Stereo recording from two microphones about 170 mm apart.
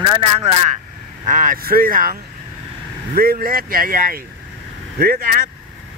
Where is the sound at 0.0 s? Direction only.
30° right (ahead or behind).